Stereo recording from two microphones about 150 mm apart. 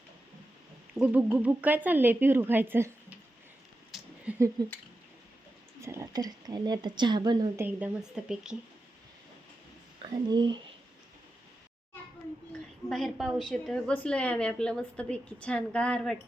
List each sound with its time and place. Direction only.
0.9 s speech: 10° right (ahead or behind)
3.9 s a sound: centre (ahead or behind)
4.6 s speech: 25° right (ahead or behind)
5.8 s speech: 20° right (ahead or behind)
7.5 s speech: 10° right (ahead or behind)
10.2 s speech: 30° right (ahead or behind)
12.9 s a woman's voice: centre (ahead or behind)